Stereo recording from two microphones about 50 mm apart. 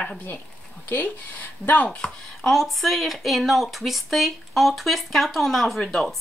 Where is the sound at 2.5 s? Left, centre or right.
Centre.